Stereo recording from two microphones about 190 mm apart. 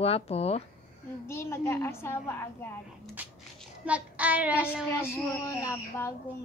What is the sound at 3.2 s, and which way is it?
Child singing, 10° right (ahead or behind).